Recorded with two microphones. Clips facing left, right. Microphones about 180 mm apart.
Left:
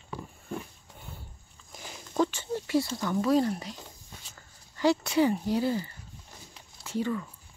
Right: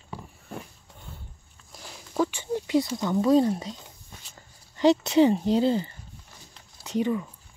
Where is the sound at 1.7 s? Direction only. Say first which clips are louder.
Even; centre (ahead or behind); by 3.7 s 25° right (ahead or behind).